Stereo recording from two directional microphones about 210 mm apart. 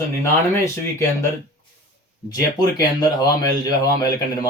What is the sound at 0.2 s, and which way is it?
Speech, 15° left (ahead or behind).